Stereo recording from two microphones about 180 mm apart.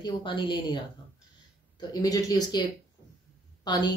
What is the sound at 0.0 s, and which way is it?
Speech, 25° left (ahead or behind).